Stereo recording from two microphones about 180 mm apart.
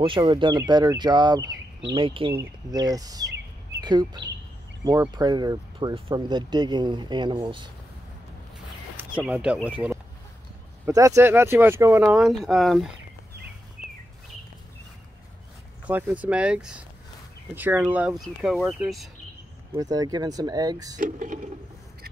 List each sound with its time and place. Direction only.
0.0 s speech: 30° right (ahead or behind)
9.1 s speech: 5° right (ahead or behind)
10.9 s speech: 20° right (ahead or behind); by 12.9 s centre (ahead or behind)
15.9 s speech: 10° right (ahead or behind)
19.7 s speech: 20° right (ahead or behind)
21.0 s a sound: 45° right (ahead or behind)